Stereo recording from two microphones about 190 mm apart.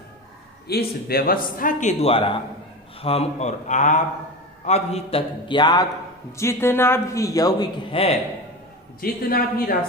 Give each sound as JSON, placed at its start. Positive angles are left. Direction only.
{"t": 0.7, "sound": "a man's voice", "side_deg": 55}
{"t": 9.0, "sound": "a man's voice", "side_deg": 50}